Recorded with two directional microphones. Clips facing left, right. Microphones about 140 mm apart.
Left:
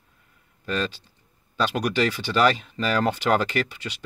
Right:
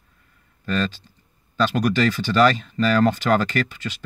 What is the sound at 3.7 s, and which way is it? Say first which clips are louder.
Speech: right 4 dB; 45° right (ahead or behind).